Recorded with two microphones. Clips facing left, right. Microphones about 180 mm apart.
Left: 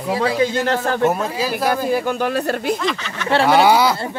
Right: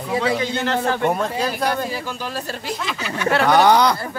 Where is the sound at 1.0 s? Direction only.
5° left (ahead or behind).